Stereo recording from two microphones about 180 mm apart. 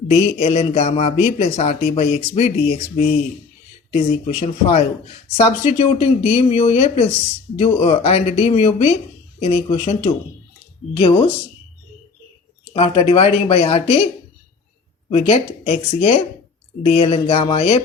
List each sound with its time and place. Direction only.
0.1 s speech: 35° left (ahead or behind)
12.7 s speech: 30° left (ahead or behind)
15.1 s speech: 35° left (ahead or behind)